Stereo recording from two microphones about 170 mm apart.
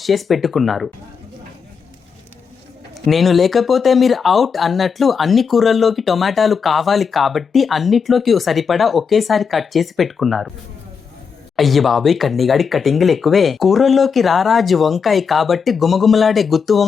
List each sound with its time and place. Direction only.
0.0 s speech: centre (ahead or behind)
3.1 s speech: centre (ahead or behind)
11.5 s speech: centre (ahead or behind)